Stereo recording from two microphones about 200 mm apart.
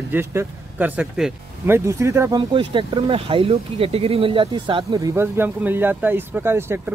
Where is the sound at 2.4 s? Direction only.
25° right (ahead or behind).